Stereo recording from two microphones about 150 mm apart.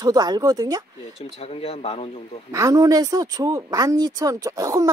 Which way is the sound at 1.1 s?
45° left (ahead or behind).